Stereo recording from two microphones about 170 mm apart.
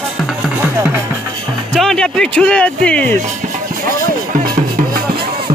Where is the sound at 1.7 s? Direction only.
5° left (ahead or behind).